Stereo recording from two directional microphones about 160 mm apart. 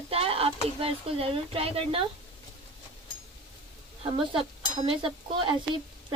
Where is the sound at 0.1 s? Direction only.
35° right (ahead or behind).